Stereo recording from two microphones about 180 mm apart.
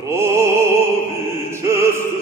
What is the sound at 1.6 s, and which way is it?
Opera, 15° right (ahead or behind).